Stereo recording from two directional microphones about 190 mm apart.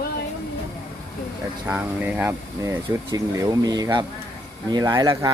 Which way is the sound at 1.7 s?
5° right (ahead or behind).